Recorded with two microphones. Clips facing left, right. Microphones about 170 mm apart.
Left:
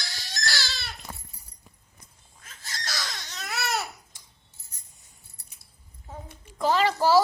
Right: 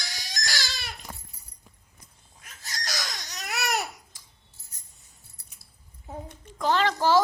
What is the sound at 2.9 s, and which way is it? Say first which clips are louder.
Baby cry: even; 15° right (ahead or behind).